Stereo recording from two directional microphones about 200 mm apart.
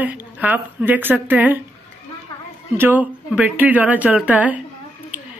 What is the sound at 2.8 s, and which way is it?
Speech, 10° right (ahead or behind).